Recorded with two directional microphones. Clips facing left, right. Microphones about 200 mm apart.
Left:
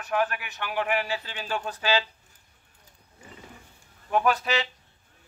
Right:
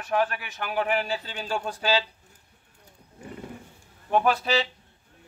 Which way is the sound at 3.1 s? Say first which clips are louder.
Right 8 dB; 55° right (ahead or behind).